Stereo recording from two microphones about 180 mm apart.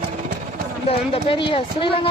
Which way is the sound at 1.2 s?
30° left (ahead or behind).